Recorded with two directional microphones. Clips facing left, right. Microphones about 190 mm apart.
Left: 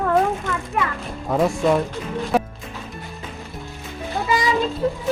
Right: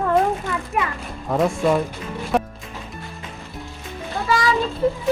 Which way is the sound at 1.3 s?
Centre (ahead or behind).